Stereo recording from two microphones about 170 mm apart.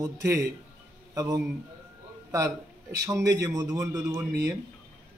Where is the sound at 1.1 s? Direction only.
20° right (ahead or behind).